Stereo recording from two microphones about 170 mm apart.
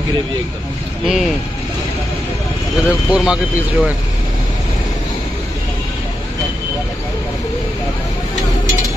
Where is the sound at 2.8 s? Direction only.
5° right (ahead or behind).